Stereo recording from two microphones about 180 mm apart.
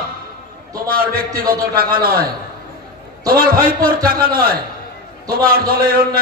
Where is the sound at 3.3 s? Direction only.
55° right (ahead or behind).